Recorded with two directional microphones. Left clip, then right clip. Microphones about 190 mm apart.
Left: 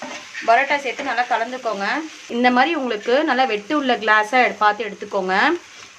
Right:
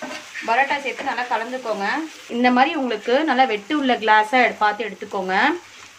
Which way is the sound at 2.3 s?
20° left (ahead or behind).